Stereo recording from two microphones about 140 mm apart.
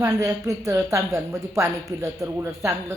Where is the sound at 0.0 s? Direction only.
25° right (ahead or behind).